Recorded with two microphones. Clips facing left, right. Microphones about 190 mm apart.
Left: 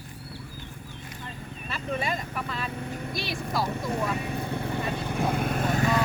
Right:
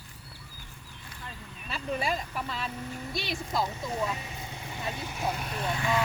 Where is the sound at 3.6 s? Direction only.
60° left (ahead or behind).